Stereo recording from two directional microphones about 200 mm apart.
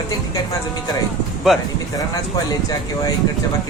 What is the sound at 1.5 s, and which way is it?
Speech, centre (ahead or behind).